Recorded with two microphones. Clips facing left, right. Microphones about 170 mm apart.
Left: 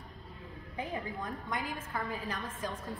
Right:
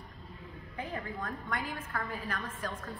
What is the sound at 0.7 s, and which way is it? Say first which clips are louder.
A woman's voice: left 1 dB; 15° left (ahead or behind).